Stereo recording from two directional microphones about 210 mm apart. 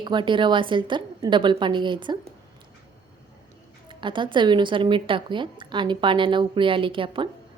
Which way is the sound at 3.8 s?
20° right (ahead or behind).